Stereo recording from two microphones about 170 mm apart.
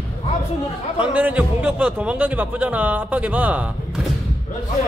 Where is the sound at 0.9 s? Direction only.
10° right (ahead or behind).